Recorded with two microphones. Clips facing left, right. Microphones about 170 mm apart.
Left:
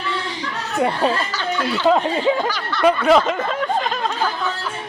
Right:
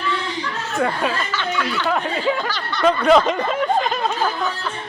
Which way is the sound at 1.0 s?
35° left (ahead or behind).